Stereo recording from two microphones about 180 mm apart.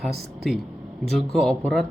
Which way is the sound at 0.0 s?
Centre (ahead or behind).